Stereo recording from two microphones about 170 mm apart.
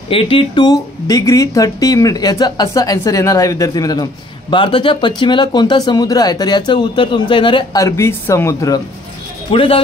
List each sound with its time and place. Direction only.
0.1 s speech: 30° left (ahead or behind)
9.5 s speech: 35° left (ahead or behind)